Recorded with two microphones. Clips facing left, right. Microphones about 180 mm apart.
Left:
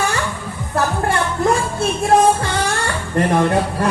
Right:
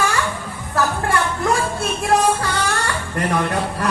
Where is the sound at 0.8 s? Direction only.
25° left (ahead or behind).